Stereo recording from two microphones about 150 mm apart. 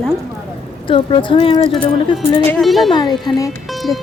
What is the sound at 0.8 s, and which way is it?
Speech, 35° left (ahead or behind).